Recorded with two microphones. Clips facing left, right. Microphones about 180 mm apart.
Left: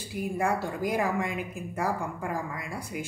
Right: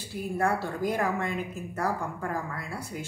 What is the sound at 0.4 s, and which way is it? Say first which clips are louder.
A woman's voice: right 1 dB; 10° left (ahead or behind).